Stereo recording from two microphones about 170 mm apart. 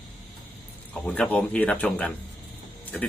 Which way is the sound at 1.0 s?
5° left (ahead or behind).